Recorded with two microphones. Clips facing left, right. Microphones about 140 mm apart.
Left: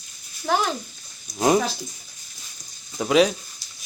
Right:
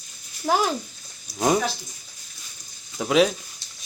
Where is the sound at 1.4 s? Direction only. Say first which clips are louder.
Left 2 dB; centre (ahead or behind).